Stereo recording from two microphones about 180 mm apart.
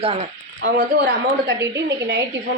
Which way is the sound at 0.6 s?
65° right (ahead or behind).